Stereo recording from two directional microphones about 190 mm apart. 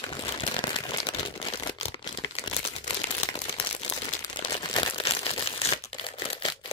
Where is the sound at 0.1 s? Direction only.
25° left (ahead or behind).